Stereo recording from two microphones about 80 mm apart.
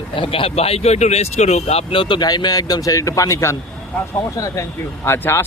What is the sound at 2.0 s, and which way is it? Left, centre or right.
Speech, left.